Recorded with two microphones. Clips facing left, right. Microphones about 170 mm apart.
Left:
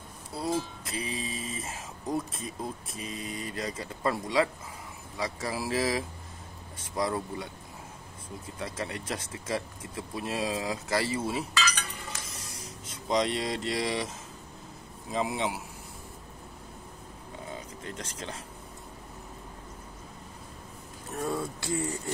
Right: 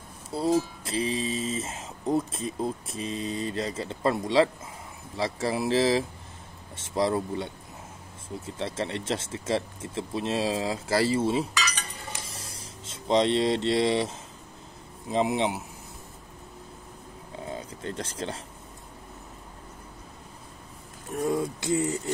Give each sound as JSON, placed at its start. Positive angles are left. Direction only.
{"t": 0.3, "sound": "speech", "side_deg": -30}
{"t": 8.5, "sound": "speech", "side_deg": -30}
{"t": 12.3, "sound": "a sound", "side_deg": -30}
{"t": 15.0, "sound": "speech", "side_deg": -25}
{"t": 17.8, "sound": "speech", "side_deg": -30}
{"t": 21.3, "sound": "speech", "side_deg": -20}